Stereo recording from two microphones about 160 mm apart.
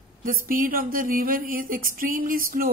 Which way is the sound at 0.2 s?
60° right (ahead or behind).